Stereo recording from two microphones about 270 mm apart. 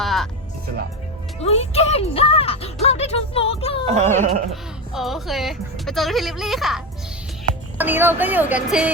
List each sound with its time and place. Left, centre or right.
0.0 s music: centre
1.4 s music: left
3.8 s a sound: right
4.9 s a woman's voice: centre